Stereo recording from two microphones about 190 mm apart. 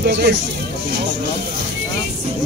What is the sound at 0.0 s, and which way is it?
Speech, 65° right (ahead or behind).